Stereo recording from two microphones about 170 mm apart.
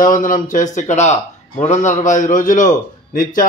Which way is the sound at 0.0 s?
50° left (ahead or behind).